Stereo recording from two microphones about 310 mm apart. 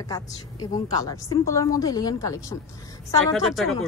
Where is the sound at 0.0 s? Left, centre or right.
Centre.